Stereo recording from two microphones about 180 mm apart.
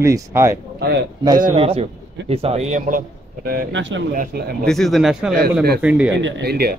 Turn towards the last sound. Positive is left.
turn(degrees=-60)  # may be behind; listen again after turning